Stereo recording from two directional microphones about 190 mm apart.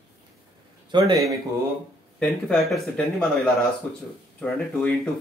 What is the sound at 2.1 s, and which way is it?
Speech, 5° left (ahead or behind).